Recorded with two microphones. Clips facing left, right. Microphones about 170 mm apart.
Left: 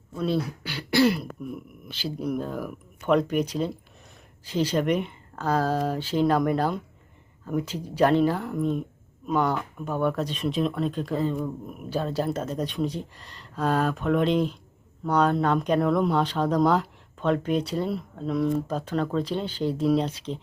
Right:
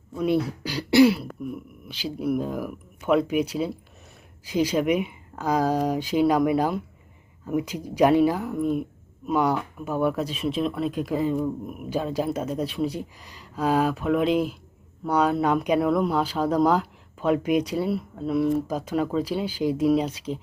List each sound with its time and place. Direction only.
0.1 s speech: 15° right (ahead or behind)
0.4 s speech: 40° right (ahead or behind)
1.0 s speech: 5° right (ahead or behind)